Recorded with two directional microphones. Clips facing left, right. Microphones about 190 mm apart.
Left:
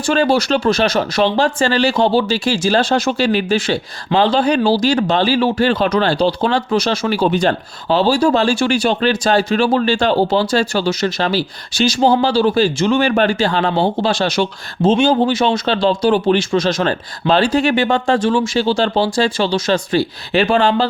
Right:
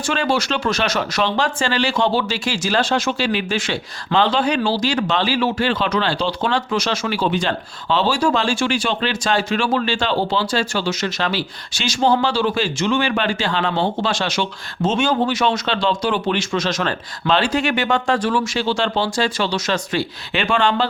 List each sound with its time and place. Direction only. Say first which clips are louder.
0.1 s speech: left 6 dB; 35° left (ahead or behind)